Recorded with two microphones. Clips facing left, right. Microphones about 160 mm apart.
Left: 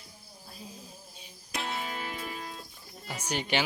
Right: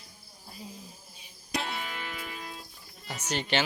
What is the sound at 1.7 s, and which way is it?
Music, 40° left (ahead or behind).